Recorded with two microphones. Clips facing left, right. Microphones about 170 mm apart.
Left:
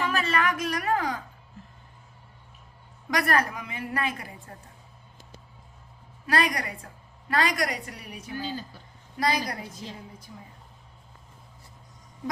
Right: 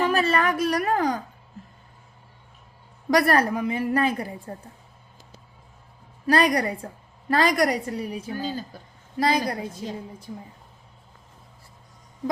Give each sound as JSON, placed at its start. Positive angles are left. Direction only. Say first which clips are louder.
{"t": 0.0, "sound": "a sound", "louder": "right 5 dB", "side_deg": -35}
{"t": 3.1, "sound": "a woman's voice", "louder": "right 6 dB", "side_deg": -35}
{"t": 6.2, "sound": "a woman's voice", "louder": "right 6 dB", "side_deg": -35}
{"t": 9.1, "sound": "a woman's voice", "louder": "right 4 dB", "side_deg": -30}